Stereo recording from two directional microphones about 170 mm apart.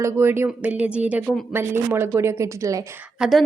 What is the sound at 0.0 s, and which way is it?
Speech, 15° right (ahead or behind).